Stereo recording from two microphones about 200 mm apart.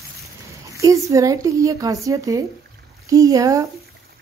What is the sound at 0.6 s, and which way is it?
Speech, 15° right (ahead or behind).